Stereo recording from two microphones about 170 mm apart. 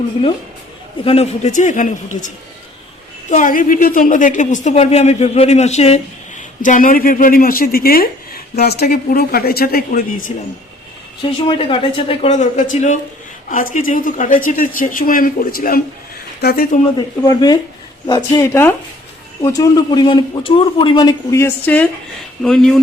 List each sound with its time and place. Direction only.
1.0 s a woman's voice: 35° left (ahead or behind); by 10.3 s 50° left (ahead or behind)
11.3 s a woman's voice: 30° left (ahead or behind); by 15.8 s 55° left (ahead or behind)
16.4 s speech: 70° left (ahead or behind)
17.2 s a man's voice: 25° left (ahead or behind); by 22.8 s centre (ahead or behind)